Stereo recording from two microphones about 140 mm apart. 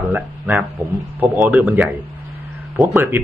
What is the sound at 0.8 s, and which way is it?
Speech, 25° left (ahead or behind).